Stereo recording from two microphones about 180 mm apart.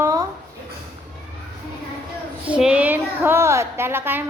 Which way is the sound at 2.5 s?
5° right (ahead or behind).